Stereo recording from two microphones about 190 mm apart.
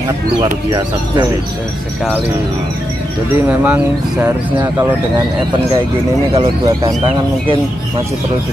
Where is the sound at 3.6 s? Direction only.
5° right (ahead or behind).